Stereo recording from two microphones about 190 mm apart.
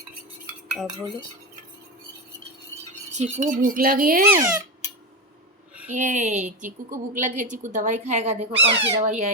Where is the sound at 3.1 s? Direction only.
35° right (ahead or behind).